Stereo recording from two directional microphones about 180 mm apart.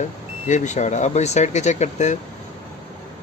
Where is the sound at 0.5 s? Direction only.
40° left (ahead or behind).